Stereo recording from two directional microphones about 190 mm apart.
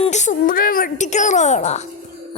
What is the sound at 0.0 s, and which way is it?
A woman's voice, 40° left (ahead or behind).